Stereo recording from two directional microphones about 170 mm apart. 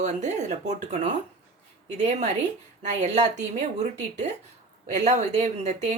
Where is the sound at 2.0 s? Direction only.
40° right (ahead or behind).